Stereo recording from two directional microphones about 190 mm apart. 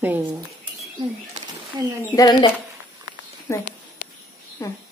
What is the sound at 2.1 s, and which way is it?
A woman's voice, 20° left (ahead or behind).